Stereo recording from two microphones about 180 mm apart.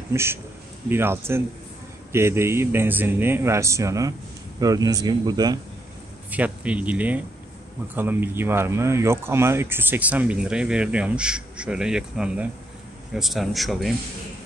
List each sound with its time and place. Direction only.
0.1 s a man's voice: 15° right (ahead or behind)
6.3 s speech: 10° right (ahead or behind)